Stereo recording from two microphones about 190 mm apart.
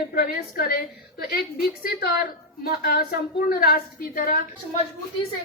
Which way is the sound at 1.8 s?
50° left (ahead or behind).